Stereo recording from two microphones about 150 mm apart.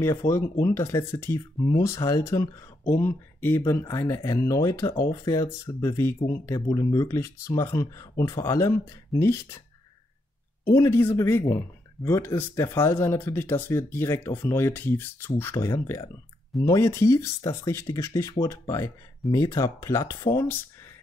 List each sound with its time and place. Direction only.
0.0 s speech: 20° left (ahead or behind)
10.7 s speech: 20° left (ahead or behind)